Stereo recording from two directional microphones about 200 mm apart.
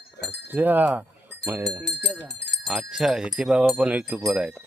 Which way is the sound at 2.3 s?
60° left (ahead or behind).